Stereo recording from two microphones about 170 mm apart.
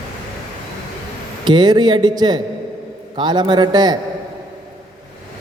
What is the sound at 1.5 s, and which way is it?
A man's voice, 25° right (ahead or behind).